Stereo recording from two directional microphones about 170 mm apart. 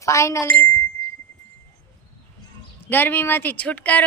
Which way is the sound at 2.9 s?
10° left (ahead or behind).